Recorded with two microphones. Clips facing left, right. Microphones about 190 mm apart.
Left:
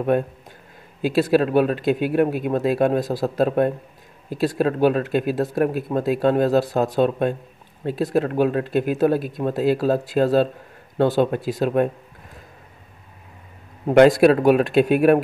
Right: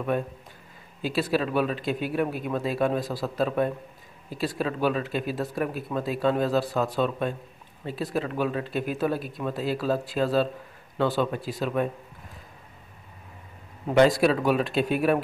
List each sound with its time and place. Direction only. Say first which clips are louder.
1.0 s speech: left 8 dB; 50° left (ahead or behind)
14.2 s speech: left 8 dB; 60° left (ahead or behind)